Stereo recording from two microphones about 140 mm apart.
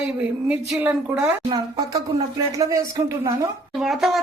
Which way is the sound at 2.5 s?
25° right (ahead or behind).